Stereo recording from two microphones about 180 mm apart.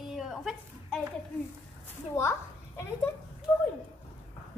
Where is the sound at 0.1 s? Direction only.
Centre (ahead or behind).